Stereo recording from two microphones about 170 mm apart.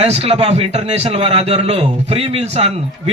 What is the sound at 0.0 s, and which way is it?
A man's voice, 35° right (ahead or behind).